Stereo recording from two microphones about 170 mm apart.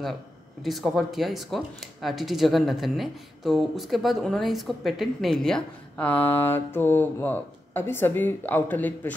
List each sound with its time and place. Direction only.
0.6 s speech: centre (ahead or behind)